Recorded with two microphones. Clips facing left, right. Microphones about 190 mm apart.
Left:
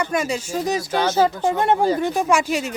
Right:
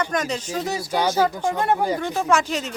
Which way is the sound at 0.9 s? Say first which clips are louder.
Right 2 dB; 10° right (ahead or behind).